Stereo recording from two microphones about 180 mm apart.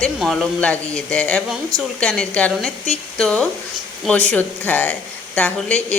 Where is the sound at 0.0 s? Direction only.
Centre (ahead or behind).